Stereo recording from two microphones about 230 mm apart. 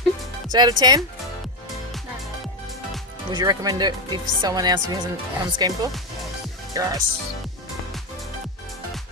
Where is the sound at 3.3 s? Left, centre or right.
Centre.